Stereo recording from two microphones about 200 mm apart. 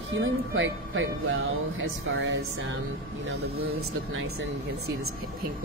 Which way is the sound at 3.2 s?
90° right.